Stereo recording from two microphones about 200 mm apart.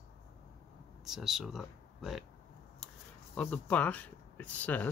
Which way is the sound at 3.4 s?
5° left (ahead or behind).